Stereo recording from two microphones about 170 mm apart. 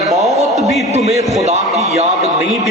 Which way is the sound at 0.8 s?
40° right (ahead or behind).